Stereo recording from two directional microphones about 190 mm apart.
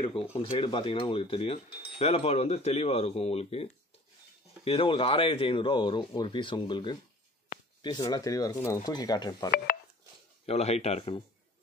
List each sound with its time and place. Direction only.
0.0 s speech: 30° left (ahead or behind)
4.6 s speech: 30° left (ahead or behind)
10.4 s speech: 35° left (ahead or behind)